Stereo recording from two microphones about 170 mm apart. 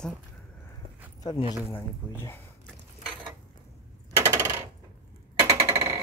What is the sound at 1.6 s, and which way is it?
Speech, 15° left (ahead or behind).